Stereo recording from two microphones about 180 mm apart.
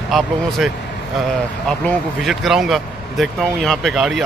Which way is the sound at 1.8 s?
Centre (ahead or behind).